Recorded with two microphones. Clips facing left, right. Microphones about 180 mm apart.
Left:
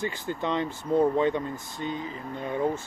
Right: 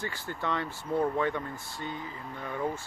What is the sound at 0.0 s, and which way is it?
Speech, 20° left (ahead or behind).